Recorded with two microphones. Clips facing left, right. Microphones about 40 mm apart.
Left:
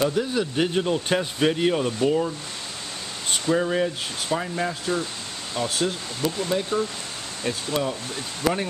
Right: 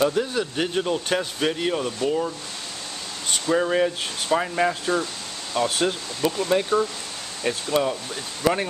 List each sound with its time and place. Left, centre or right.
0.0 s speech: centre
3.4 s speech: centre